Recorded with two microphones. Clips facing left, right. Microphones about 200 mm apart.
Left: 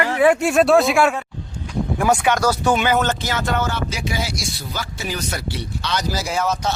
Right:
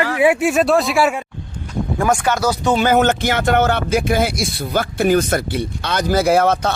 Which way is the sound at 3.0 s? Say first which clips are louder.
Right 5 dB; 60° right (ahead or behind).